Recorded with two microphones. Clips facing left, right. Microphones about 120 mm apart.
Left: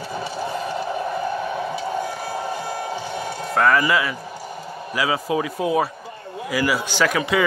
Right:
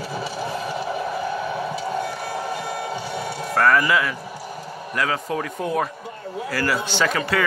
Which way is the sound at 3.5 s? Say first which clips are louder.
Even; centre (ahead or behind).